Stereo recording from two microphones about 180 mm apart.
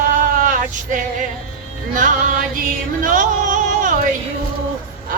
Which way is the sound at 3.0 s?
45° right (ahead or behind).